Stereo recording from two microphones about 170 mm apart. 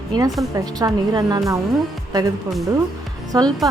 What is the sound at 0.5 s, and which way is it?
A woman's voice, 20° right (ahead or behind).